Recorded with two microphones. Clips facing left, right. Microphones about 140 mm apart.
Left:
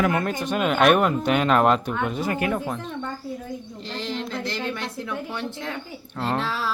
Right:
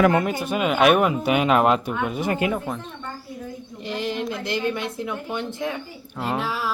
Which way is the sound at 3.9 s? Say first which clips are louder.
Right 3 dB; 15° right (ahead or behind).